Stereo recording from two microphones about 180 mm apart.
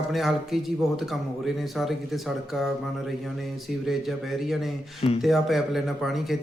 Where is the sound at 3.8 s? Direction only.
Centre (ahead or behind).